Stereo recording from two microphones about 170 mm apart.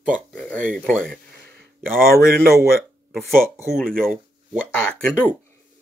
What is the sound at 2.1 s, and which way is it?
Speech, 60° right (ahead or behind).